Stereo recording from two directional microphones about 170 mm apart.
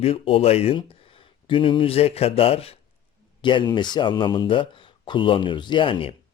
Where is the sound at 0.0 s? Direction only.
35° left (ahead or behind).